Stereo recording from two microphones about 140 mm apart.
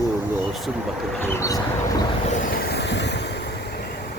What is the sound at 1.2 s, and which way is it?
Vehicle, 15° left (ahead or behind).